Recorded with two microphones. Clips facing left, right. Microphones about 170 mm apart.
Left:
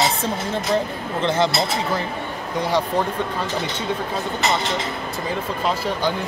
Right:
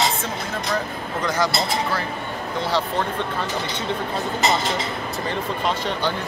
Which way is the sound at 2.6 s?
15° left (ahead or behind).